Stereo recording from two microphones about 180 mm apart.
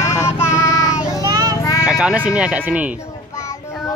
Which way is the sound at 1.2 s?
20° right (ahead or behind).